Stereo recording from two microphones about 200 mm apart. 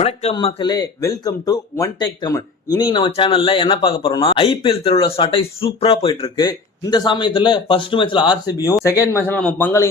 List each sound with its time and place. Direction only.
0.0 s a man's voice: 35° left (ahead or behind); by 9.9 s 10° left (ahead or behind)